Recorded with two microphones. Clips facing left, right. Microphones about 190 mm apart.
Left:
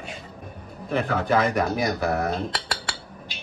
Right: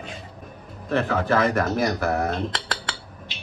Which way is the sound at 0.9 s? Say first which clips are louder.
Right 1 dB; 15° left (ahead or behind).